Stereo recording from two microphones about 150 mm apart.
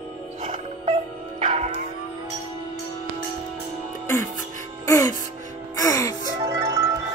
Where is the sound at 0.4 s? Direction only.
45° right (ahead or behind).